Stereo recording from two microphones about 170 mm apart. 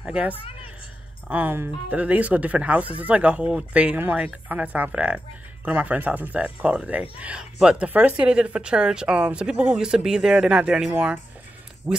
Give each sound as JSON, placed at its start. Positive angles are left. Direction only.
{"t": 0.0, "sound": "speech", "side_deg": -5}
{"t": 1.3, "sound": "speech", "side_deg": -10}